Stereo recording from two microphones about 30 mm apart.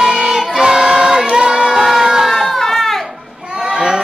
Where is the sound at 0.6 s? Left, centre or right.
Right.